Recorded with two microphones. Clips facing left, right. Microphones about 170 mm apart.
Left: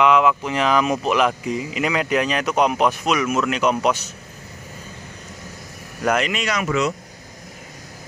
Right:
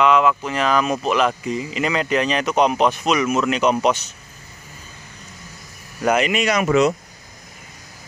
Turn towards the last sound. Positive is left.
turn(degrees=-15)  # may be behind; listen again after turning